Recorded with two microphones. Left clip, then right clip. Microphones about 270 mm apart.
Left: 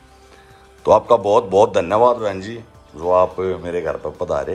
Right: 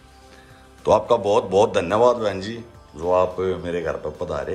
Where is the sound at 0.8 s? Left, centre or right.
Centre.